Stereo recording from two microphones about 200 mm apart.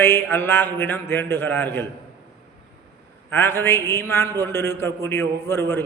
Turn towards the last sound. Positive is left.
turn(degrees=10)  # may be behind; listen again after turning